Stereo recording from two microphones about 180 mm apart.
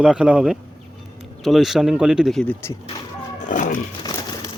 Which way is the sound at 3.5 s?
45° left (ahead or behind).